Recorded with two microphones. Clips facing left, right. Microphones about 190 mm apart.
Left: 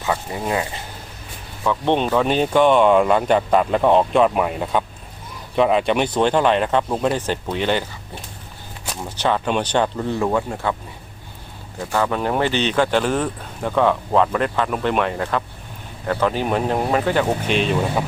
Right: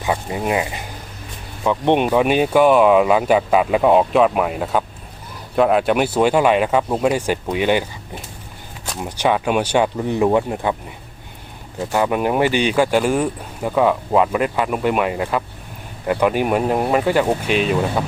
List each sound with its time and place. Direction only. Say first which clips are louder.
0.0 s speech: right 2 dB; 15° right (ahead or behind)
9.0 s speech: right 3 dB; 15° right (ahead or behind)
11.9 s speech: right 2 dB; 15° right (ahead or behind)